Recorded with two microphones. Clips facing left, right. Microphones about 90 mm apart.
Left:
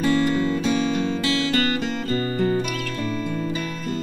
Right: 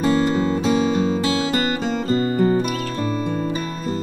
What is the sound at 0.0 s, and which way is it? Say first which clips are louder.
Music: right 2 dB; 30° right (ahead or behind).